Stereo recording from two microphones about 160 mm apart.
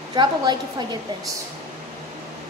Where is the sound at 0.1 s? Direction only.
25° right (ahead or behind).